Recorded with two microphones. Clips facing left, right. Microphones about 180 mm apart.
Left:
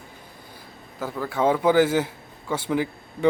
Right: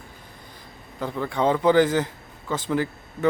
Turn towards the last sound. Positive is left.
turn(degrees=15)  # may be behind; listen again after turning